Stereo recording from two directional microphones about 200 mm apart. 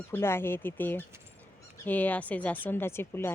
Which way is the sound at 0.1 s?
10° left (ahead or behind).